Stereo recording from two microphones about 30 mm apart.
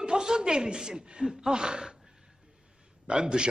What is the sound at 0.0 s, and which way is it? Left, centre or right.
Speech, right.